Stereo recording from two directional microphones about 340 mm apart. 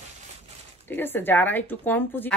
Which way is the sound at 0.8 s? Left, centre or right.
Centre.